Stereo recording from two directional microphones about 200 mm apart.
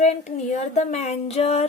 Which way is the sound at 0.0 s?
35° left (ahead or behind).